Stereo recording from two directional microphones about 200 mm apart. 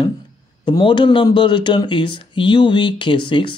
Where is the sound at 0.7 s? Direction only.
25° left (ahead or behind).